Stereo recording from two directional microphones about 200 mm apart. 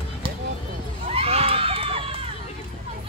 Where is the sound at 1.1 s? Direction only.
30° right (ahead or behind).